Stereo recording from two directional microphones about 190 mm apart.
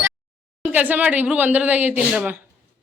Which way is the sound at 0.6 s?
10° right (ahead or behind).